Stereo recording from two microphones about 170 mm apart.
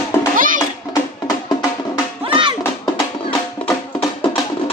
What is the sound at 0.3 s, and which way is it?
Music, 50° right (ahead or behind).